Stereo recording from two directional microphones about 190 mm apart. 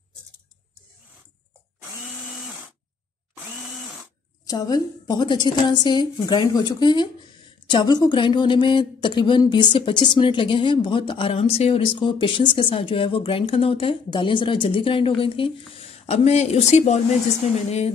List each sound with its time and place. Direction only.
4.5 s speech: 20° left (ahead or behind)